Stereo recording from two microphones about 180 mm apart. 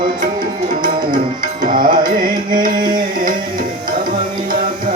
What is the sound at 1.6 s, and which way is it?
Music, 50° right (ahead or behind).